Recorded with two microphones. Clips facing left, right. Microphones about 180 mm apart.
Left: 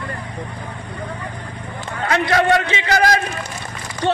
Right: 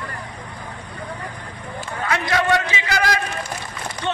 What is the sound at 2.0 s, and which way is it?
Speech, 35° left (ahead or behind).